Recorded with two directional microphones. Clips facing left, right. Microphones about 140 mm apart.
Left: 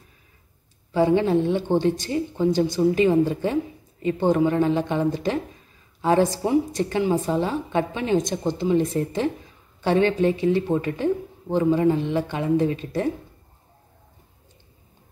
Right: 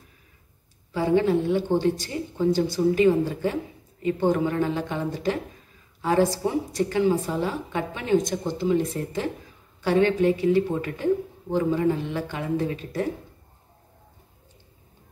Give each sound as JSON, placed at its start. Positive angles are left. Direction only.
{"t": 0.9, "sound": "a woman's voice", "side_deg": 25}